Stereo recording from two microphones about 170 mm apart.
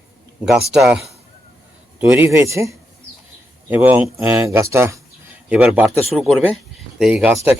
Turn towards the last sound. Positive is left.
turn(degrees=-5)  # may be behind; listen again after turning